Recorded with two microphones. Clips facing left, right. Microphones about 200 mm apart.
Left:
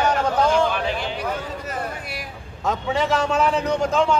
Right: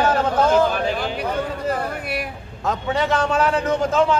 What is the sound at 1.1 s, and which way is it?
Speech, 60° right (ahead or behind).